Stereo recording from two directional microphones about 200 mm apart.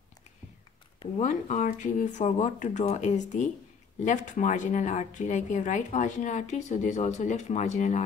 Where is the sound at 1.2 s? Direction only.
40° left (ahead or behind).